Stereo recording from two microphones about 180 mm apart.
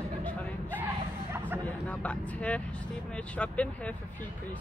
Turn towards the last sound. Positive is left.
turn(degrees=5)  # may be behind; listen again after turning